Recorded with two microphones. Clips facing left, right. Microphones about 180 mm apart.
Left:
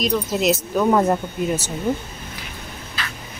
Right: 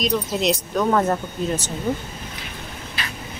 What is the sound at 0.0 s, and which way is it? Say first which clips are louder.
Speech: left 1 dB; 5° left (ahead or behind).